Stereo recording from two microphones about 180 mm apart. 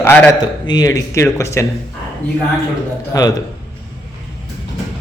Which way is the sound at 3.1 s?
20° left (ahead or behind).